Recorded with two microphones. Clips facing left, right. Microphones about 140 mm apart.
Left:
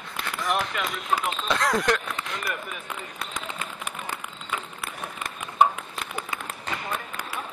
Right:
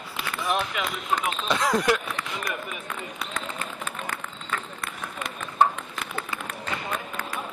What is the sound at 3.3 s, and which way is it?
Run, 15° left (ahead or behind).